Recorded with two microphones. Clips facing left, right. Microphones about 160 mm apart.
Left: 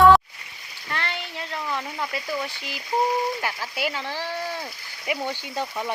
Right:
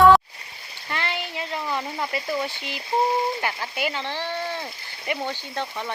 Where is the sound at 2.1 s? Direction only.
Centre (ahead or behind).